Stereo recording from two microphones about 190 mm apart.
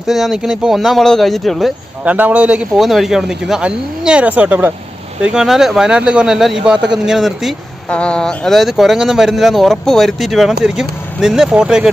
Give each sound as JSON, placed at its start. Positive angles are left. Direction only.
{"t": 0.0, "sound": "speech", "side_deg": 0}